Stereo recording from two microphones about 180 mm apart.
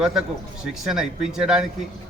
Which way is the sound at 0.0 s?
5° right (ahead or behind).